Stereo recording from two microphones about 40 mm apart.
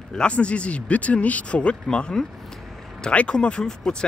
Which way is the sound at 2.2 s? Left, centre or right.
Centre.